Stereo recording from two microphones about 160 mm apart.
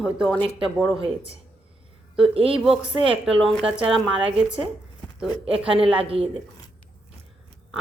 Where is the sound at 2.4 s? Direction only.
35° right (ahead or behind).